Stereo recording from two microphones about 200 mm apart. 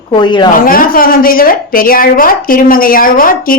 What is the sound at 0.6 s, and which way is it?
A woman's voice, 45° left (ahead or behind).